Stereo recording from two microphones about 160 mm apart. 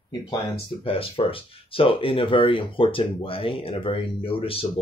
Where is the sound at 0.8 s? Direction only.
35° left (ahead or behind).